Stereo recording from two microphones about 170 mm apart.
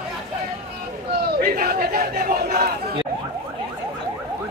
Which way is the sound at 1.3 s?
60° right (ahead or behind).